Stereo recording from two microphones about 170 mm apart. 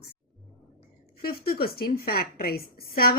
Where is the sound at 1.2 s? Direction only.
60° left (ahead or behind).